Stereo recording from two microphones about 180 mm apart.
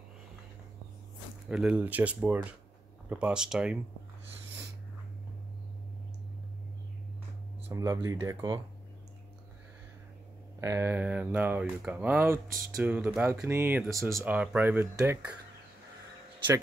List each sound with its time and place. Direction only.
1.5 s speech: 5° right (ahead or behind)
7.7 s speech: 20° right (ahead or behind)
10.6 s speech: 15° right (ahead or behind)